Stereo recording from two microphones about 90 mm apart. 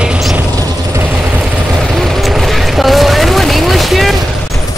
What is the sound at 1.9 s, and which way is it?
Vehicle, centre (ahead or behind).